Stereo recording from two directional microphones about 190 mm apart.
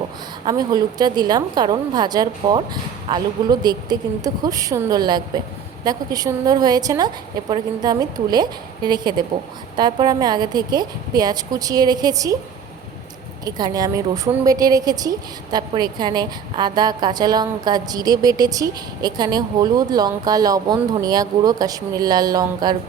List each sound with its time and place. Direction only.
0.4 s a woman's voice: 20° right (ahead or behind)
13.4 s a woman's voice: 20° right (ahead or behind)